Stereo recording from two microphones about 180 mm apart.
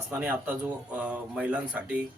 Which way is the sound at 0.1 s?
10° right (ahead or behind).